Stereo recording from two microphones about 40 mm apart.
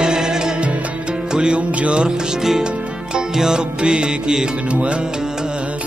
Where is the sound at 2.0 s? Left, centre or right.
Centre.